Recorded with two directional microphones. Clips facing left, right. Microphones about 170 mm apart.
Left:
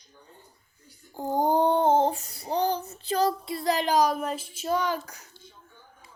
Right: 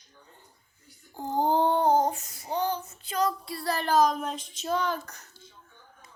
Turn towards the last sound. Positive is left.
turn(degrees=10)  # may be behind; listen again after turning